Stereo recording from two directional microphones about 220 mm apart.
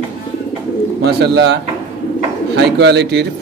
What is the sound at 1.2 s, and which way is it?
Speech, 50° right (ahead or behind).